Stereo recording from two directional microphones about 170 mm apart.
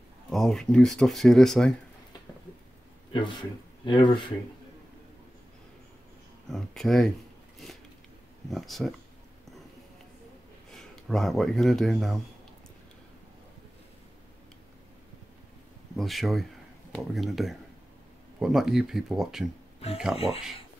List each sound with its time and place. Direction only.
0.3 s speech: centre (ahead or behind)
3.1 s speech: 25° left (ahead or behind)
6.5 s speech: centre (ahead or behind)
8.5 s speech: centre (ahead or behind)
10.7 s speech: centre (ahead or behind)
16.0 s speech: centre (ahead or behind)
20.2 s speech: 35° left (ahead or behind)